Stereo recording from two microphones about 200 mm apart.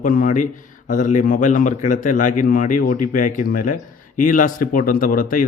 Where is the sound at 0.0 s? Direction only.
45° left (ahead or behind).